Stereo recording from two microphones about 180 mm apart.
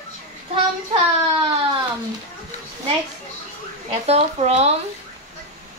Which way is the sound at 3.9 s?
35° right (ahead or behind).